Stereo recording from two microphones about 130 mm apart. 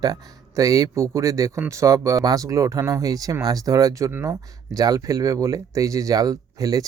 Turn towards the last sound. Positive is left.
turn(degrees=-30)  # may be behind; listen again after turning